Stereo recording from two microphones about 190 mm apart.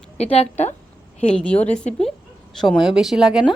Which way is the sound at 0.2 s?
35° left (ahead or behind).